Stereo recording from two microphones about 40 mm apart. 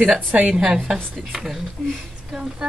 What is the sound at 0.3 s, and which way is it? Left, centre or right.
Speech, right.